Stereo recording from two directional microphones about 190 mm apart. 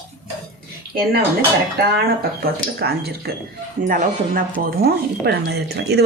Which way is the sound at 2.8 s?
55° right (ahead or behind).